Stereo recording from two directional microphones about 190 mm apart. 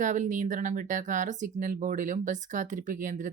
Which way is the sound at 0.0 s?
40° right (ahead or behind).